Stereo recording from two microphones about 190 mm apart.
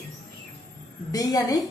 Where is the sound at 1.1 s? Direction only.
20° left (ahead or behind).